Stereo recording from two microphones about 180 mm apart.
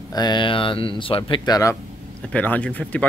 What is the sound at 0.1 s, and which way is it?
Speech, 25° left (ahead or behind).